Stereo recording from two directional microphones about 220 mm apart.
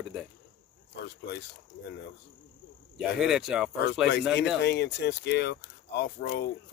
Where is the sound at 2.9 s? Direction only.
Centre (ahead or behind).